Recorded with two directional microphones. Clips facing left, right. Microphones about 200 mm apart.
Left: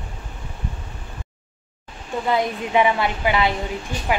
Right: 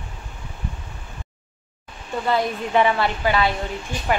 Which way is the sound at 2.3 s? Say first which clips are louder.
Even; 15° left (ahead or behind).